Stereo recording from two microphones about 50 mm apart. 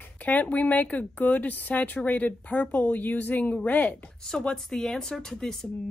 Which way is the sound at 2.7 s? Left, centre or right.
Left.